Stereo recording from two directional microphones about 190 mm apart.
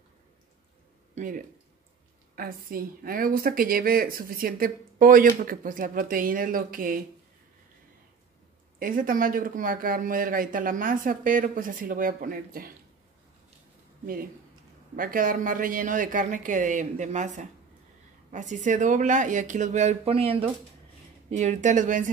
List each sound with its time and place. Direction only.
1.1 s speech: 45° right (ahead or behind)
8.7 s speech: 45° right (ahead or behind)
14.0 s speech: 50° right (ahead or behind)